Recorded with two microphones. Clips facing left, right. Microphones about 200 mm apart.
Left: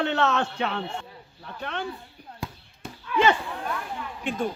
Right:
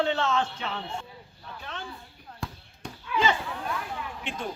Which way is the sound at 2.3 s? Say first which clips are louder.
Left 1 dB; 10° left (ahead or behind).